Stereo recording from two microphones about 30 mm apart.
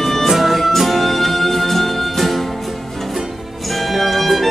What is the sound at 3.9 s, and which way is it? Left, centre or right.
Music, centre.